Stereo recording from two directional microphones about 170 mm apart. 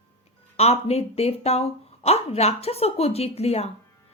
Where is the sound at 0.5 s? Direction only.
35° left (ahead or behind).